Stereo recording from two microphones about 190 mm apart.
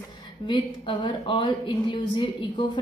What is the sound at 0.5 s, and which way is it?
Speech, 25° left (ahead or behind).